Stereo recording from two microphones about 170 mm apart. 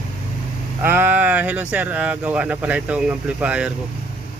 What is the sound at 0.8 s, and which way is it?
Speech, 10° right (ahead or behind).